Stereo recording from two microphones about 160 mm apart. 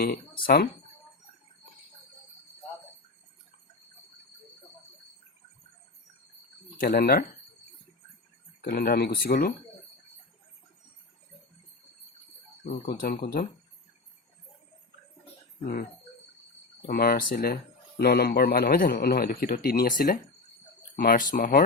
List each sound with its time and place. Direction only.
0.0 s speech: 70° left (ahead or behind)
6.7 s speech: 75° left (ahead or behind)
8.6 s speech: 65° left (ahead or behind)
12.8 s speech: 65° left (ahead or behind)
15.6 s speech: 65° left (ahead or behind)